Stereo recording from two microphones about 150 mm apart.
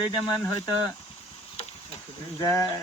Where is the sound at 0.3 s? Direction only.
25° left (ahead or behind).